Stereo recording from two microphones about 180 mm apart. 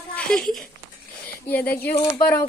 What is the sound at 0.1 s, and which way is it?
Speech, 5° left (ahead or behind).